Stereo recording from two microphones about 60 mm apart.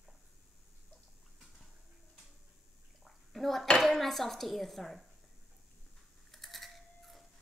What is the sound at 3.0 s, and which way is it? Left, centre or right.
Bathtub, centre.